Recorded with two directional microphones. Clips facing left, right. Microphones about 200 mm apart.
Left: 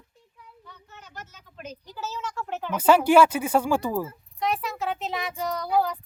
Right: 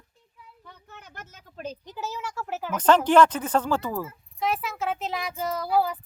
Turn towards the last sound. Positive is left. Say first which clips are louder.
# even
turn(degrees=-5)  # may be behind; listen again after turning